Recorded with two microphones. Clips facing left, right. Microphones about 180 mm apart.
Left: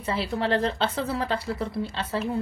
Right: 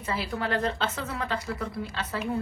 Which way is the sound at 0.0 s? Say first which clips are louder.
Left 4 dB; 30° left (ahead or behind).